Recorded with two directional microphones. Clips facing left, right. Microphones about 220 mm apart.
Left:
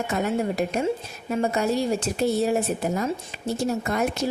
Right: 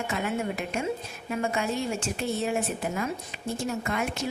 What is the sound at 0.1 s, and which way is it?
A woman's voice, 40° left (ahead or behind).